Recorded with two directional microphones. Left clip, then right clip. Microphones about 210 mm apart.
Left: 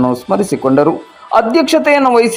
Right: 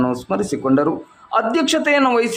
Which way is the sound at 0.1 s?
15° left (ahead or behind).